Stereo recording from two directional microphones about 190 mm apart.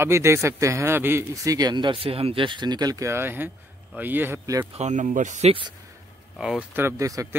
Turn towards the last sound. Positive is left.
turn(degrees=-15)  # may be behind; listen again after turning